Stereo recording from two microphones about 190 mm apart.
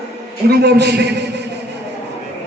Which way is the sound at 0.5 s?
60° right (ahead or behind).